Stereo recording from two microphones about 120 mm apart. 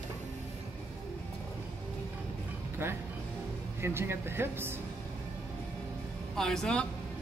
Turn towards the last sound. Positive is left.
turn(degrees=5)  # may be behind; listen again after turning